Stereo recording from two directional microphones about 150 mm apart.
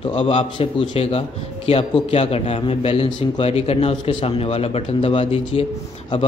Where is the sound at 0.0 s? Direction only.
35° left (ahead or behind).